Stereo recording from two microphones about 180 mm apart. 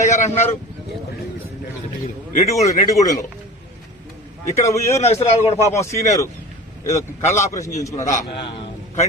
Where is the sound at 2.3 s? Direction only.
35° left (ahead or behind).